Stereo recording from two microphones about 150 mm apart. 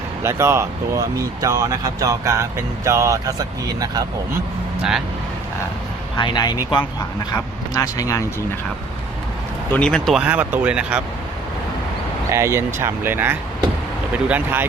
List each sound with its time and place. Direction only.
0.2 s speech: 20° right (ahead or behind)
4.8 s speech: 5° right (ahead or behind)
6.1 s speech: 30° left (ahead or behind)
9.7 s speech: 5° left (ahead or behind)
10.2 s speech: 10° right (ahead or behind)
12.3 s speech: 20° right (ahead or behind)